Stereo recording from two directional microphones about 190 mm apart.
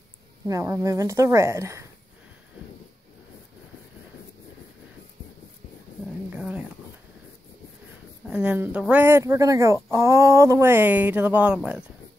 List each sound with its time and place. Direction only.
0.5 s speech: 15° right (ahead or behind)
6.3 s a sound: 5° right (ahead or behind)
8.3 s speech: 5° right (ahead or behind)